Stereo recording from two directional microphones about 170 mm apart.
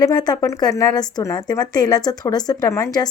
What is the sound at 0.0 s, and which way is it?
A woman's voice, 25° left (ahead or behind).